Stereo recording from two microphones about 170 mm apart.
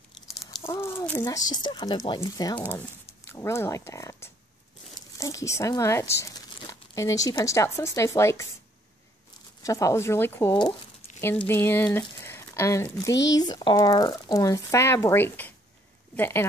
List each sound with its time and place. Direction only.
0.6 s speech: 15° left (ahead or behind)
9.6 s speech: 20° left (ahead or behind)
12.2 s a sound: 15° left (ahead or behind)
13.1 s speech: 90° left
13.4 s speech: 25° left (ahead or behind)